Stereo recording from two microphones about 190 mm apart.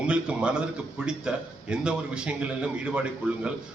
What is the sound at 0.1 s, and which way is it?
A man's voice, 5° right (ahead or behind).